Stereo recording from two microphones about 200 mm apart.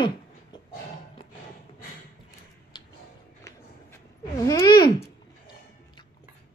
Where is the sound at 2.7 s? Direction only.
25° left (ahead or behind).